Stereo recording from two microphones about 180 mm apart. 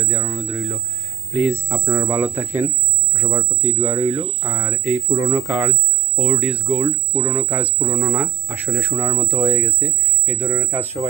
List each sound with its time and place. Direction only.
0.0 s speech: 5° right (ahead or behind)